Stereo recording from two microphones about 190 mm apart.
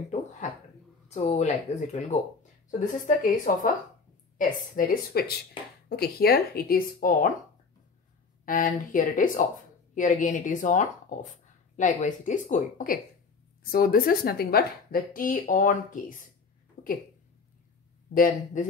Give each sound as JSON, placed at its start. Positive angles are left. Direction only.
{"t": 1.0, "sound": "a woman's voice", "side_deg": 35}
{"t": 8.5, "sound": "a woman's voice", "side_deg": 45}
{"t": 16.8, "sound": "a sound", "side_deg": 50}
{"t": 18.1, "sound": "a woman's voice", "side_deg": 45}